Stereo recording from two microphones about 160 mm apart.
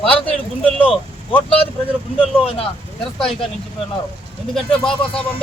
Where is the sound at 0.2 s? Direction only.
35° left (ahead or behind).